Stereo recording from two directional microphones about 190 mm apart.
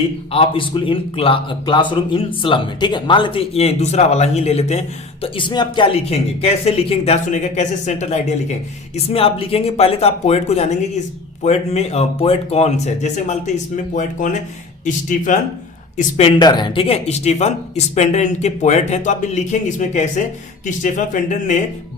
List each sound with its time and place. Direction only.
0.3 s a man's voice: 30° left (ahead or behind)